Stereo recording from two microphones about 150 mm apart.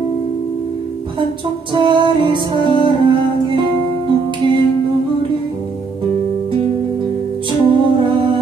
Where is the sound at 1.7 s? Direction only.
30° right (ahead or behind).